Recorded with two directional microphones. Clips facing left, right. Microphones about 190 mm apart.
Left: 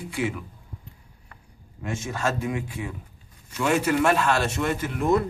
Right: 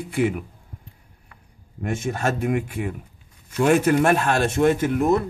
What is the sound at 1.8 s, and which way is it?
Speech, 55° right (ahead or behind).